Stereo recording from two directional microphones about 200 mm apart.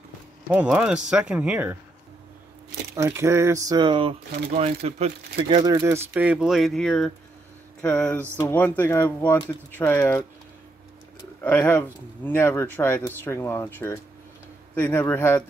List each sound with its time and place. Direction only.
0.5 s speech: 5° right (ahead or behind)
3.0 s speech: 15° right (ahead or behind); by 5.6 s 35° right (ahead or behind)
5.6 s speech: 20° right (ahead or behind); by 10.2 s 10° left (ahead or behind)
11.4 s speech: 10° left (ahead or behind)